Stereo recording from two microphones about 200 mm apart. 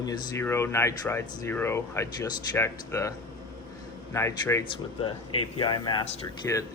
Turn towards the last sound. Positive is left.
turn(degrees=15)  # may be behind; listen again after turning